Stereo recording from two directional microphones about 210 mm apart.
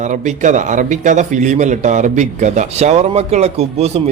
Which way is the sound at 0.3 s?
35° right (ahead or behind).